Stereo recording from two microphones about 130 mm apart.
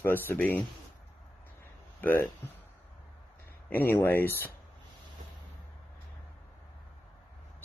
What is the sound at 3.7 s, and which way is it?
Speech, 15° left (ahead or behind).